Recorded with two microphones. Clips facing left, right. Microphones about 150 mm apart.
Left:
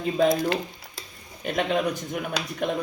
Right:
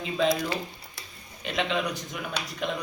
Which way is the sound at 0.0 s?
45° left (ahead or behind).